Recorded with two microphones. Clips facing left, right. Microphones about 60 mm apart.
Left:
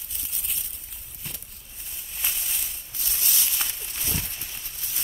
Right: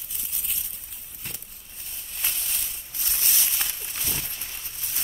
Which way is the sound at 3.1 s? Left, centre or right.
Right.